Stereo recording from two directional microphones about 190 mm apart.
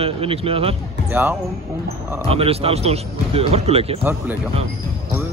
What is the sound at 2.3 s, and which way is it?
A man's voice, 30° right (ahead or behind).